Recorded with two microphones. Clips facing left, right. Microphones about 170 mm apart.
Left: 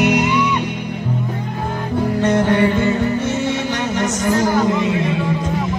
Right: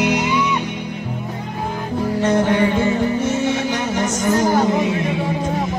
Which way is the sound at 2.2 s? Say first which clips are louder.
Left 1 dB; 15° right (ahead or behind).